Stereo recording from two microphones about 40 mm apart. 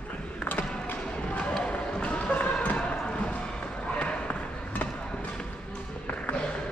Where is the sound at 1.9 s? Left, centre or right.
Left.